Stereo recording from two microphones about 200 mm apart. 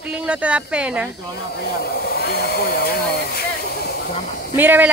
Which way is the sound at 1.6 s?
50° left (ahead or behind).